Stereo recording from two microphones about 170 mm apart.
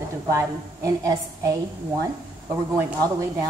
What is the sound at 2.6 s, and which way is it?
Speech, 15° right (ahead or behind).